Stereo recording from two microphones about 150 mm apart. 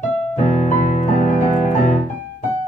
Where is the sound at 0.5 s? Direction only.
55° left (ahead or behind).